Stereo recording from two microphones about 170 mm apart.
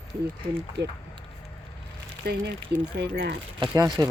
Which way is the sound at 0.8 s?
90° right.